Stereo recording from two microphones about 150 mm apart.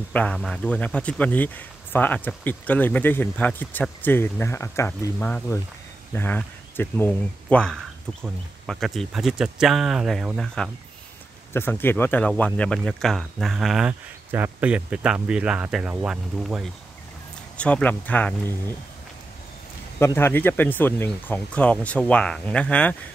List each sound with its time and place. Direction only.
0.1 s a man's voice: 5° left (ahead or behind)
11.5 s speech: 15° left (ahead or behind); by 16.6 s 5° right (ahead or behind)
17.6 s a man's voice: 10° left (ahead or behind)
20.0 s a man's voice: 15° left (ahead or behind)